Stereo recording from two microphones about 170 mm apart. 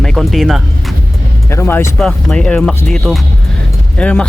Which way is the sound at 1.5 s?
15° left (ahead or behind).